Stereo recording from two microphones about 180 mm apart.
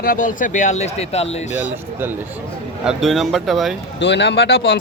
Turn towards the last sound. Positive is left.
turn(degrees=85)